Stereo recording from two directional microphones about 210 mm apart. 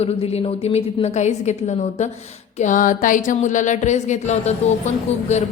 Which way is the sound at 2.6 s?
40° left (ahead or behind).